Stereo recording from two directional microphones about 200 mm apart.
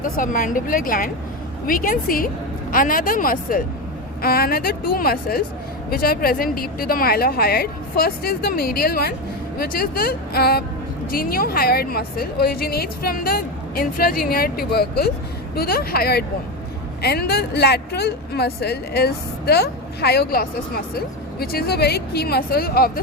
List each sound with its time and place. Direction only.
0.0 s speech: 40° left (ahead or behind)